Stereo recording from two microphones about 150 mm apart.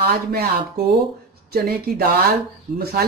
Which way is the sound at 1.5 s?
90° right.